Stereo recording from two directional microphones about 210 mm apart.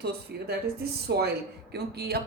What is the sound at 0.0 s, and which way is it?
Speech, 50° right (ahead or behind).